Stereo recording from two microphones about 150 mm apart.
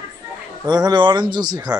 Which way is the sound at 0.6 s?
25° right (ahead or behind).